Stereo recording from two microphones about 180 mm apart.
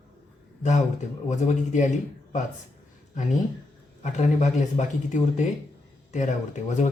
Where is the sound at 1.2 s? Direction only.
40° left (ahead or behind).